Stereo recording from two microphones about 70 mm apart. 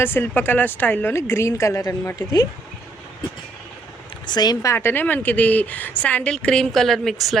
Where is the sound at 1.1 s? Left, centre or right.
Left.